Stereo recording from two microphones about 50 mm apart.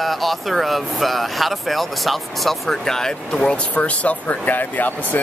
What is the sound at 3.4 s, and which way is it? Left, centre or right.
Speech, left.